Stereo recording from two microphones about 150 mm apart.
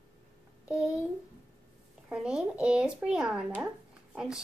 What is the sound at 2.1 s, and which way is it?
A child's voice, 5° right (ahead or behind).